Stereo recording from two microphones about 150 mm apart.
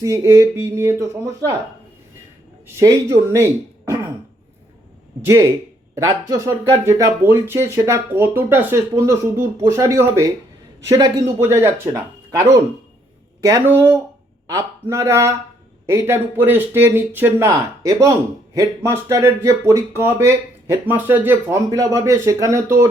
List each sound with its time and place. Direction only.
0.0 s speech: 20° right (ahead or behind)
2.7 s speech: 20° right (ahead or behind)
5.2 s speech: 20° right (ahead or behind)
13.4 s speech: 20° right (ahead or behind)